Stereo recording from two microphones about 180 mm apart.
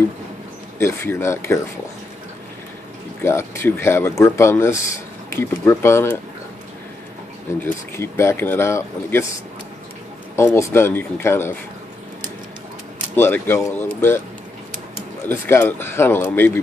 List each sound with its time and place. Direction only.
0.7 s speech: 15° left (ahead or behind)
3.2 s speech: 15° left (ahead or behind)
7.6 s speech: 15° left (ahead or behind)
10.3 s speech: 15° left (ahead or behind)
13.1 s speech: 10° left (ahead or behind)
15.2 s speech: 10° left (ahead or behind)